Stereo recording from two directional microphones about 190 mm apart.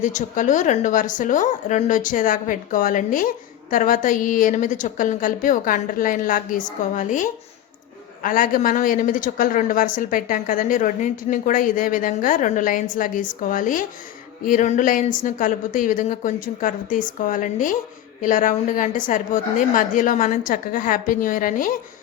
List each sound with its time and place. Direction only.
0.0 s a woman's voice: 40° left (ahead or behind)